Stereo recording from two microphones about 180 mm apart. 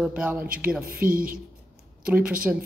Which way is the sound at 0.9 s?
50° right (ahead or behind).